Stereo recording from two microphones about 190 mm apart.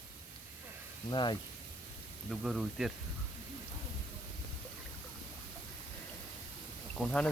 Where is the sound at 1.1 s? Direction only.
25° left (ahead or behind).